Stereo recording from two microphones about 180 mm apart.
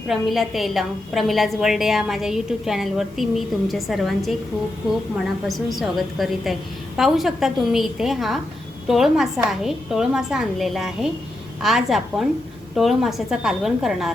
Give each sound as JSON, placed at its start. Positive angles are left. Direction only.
{"t": 0.1, "sound": "a woman's voice", "side_deg": 0}
{"t": 5.5, "sound": "a woman's voice", "side_deg": 0}